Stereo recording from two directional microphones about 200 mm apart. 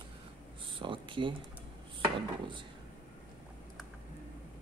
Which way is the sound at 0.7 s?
25° right (ahead or behind).